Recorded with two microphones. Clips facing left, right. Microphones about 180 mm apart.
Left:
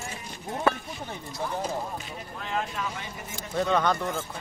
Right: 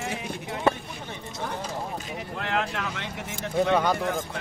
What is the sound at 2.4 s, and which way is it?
Speech, 80° right.